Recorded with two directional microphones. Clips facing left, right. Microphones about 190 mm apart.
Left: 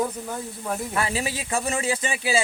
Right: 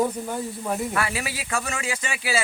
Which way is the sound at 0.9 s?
25° left (ahead or behind).